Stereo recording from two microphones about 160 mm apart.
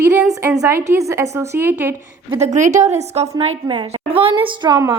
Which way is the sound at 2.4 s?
50° right (ahead or behind).